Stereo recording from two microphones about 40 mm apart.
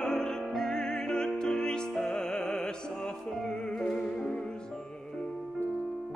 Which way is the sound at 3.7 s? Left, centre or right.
Centre.